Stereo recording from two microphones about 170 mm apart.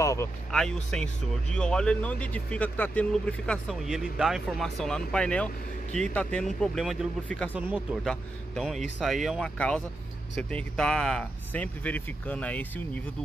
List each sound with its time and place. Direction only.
0.0 s a sound: 15° left (ahead or behind)
0.5 s speech: 5° left (ahead or behind)
7.5 s speech: 5° right (ahead or behind)